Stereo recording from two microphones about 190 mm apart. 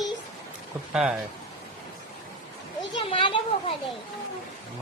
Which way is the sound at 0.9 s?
5° right (ahead or behind).